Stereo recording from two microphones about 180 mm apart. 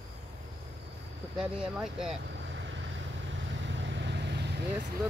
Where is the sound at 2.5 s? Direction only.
80° right.